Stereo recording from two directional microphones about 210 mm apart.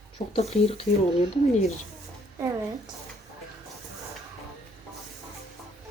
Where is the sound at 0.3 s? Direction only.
30° left (ahead or behind).